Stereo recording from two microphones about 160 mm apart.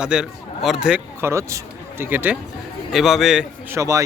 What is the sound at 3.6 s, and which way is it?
Speech, 20° right (ahead or behind).